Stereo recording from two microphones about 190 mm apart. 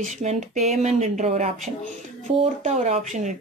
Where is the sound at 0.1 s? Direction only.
35° right (ahead or behind).